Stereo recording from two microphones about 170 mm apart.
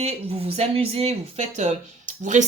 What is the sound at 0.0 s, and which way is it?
Speech, 35° right (ahead or behind).